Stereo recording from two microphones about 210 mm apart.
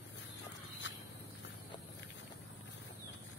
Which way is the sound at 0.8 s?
60° left (ahead or behind).